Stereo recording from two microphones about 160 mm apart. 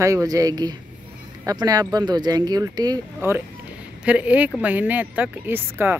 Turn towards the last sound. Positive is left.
turn(degrees=-15)  # may be behind; listen again after turning